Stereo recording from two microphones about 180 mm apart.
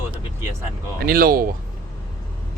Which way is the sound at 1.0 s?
55° right (ahead or behind).